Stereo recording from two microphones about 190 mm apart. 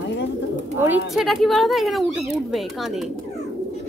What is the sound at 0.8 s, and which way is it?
Speech, 5° right (ahead or behind).